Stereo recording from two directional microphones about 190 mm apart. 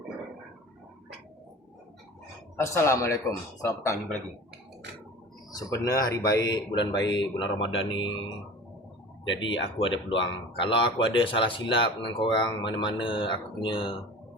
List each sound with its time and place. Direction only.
2.6 s speech: 15° left (ahead or behind)
5.5 s speech: 20° left (ahead or behind)
7.7 s speech: 90° left
9.2 s speech: 80° left
10.2 s speech: 25° left (ahead or behind)